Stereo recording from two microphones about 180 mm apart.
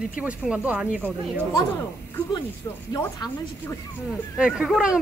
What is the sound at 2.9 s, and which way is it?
Speech, 15° left (ahead or behind).